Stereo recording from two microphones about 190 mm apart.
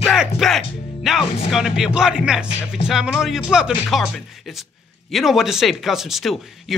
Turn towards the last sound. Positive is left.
turn(degrees=0)  # may be behind; listen again after turning